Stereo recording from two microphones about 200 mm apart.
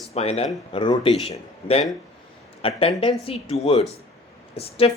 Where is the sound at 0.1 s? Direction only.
30° left (ahead or behind).